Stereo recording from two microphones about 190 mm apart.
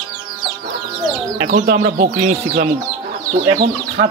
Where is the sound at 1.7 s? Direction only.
40° right (ahead or behind).